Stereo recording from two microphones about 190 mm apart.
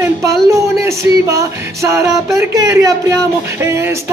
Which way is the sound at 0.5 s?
15° right (ahead or behind).